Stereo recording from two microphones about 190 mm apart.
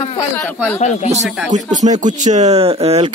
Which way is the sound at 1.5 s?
40° right (ahead or behind).